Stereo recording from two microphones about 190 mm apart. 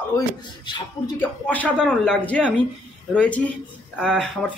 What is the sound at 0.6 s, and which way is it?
Speech, 20° left (ahead or behind).